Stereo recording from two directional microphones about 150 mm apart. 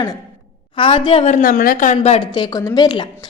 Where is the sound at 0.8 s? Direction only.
35° left (ahead or behind).